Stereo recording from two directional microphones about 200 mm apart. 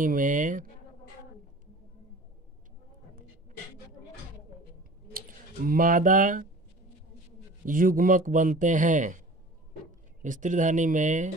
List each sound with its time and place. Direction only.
0.0 s speech: 40° right (ahead or behind)
5.7 s speech: 45° right (ahead or behind)
7.6 s speech: 45° right (ahead or behind)